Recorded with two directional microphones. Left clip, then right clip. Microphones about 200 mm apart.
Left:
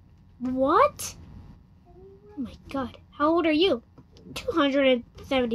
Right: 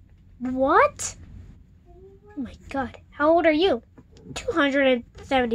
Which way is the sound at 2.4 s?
5° left (ahead or behind).